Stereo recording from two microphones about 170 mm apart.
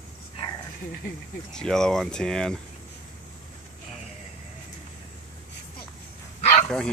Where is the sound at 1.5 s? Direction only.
5° left (ahead or behind).